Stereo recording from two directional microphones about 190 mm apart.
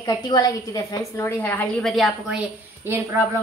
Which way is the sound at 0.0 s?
20° left (ahead or behind).